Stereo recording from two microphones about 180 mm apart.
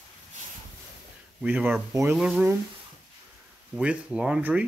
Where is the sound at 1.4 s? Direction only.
5° right (ahead or behind).